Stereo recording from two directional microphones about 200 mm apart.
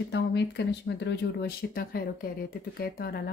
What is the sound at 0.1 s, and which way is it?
A woman's voice, 60° left (ahead or behind).